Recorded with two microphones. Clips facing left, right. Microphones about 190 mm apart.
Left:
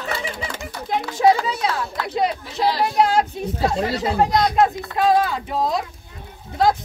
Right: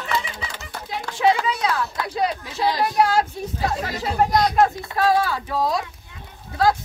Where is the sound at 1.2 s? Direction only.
35° left (ahead or behind).